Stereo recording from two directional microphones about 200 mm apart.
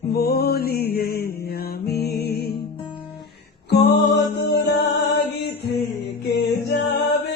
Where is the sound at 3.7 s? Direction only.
55° left (ahead or behind).